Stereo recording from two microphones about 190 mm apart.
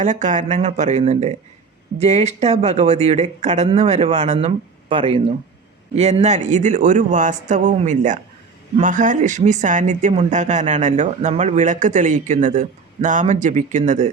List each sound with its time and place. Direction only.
0.0 s speech: 40° right (ahead or behind)